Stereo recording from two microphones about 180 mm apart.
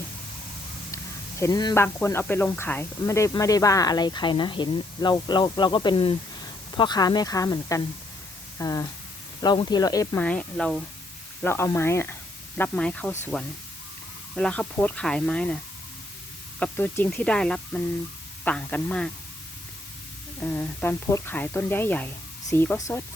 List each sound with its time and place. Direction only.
1.4 s speech: 20° left (ahead or behind)
10.2 s speech: 5° left (ahead or behind)
11.4 s speech: 15° left (ahead or behind)
14.3 s speech: 5° left (ahead or behind)
16.6 s speech: 10° left (ahead or behind)
20.4 s speech: 10° left (ahead or behind)